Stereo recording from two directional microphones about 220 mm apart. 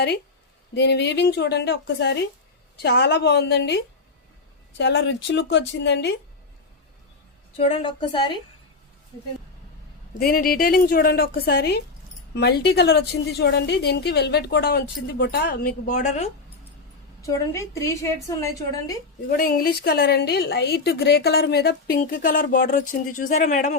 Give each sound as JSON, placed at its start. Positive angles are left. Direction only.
{"t": 0.7, "sound": "a woman's voice", "side_deg": 50}
{"t": 7.5, "sound": "a woman's voice", "side_deg": 25}
{"t": 10.2, "sound": "a woman's voice", "side_deg": 40}
{"t": 17.2, "sound": "a woman's voice", "side_deg": 15}
{"t": 19.3, "sound": "a woman's voice", "side_deg": 40}